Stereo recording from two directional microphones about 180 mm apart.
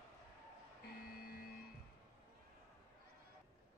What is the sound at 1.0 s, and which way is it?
Printer, 55° left (ahead or behind).